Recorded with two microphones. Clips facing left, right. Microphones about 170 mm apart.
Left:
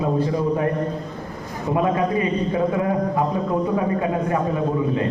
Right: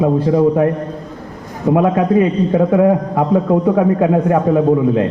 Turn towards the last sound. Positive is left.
turn(degrees=-65)  # may be behind; listen again after turning